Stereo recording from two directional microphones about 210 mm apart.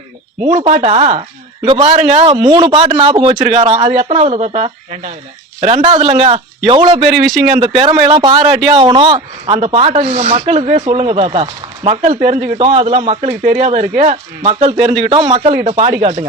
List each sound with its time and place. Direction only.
0.4 s speech: 30° right (ahead or behind)
1.9 s speech: 35° right (ahead or behind)